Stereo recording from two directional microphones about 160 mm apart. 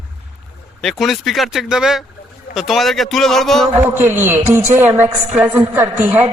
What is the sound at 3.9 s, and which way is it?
A woman's voice, 15° right (ahead or behind).